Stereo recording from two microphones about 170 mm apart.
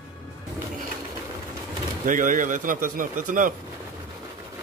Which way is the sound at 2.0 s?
50° right (ahead or behind).